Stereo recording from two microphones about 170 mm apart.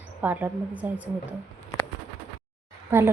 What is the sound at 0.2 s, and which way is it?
Speech, 10° right (ahead or behind).